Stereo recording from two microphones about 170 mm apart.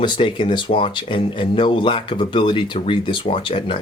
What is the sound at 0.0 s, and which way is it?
Speech, 30° left (ahead or behind).